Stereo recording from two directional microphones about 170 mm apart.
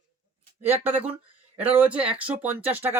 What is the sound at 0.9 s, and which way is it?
Speech, 35° right (ahead or behind).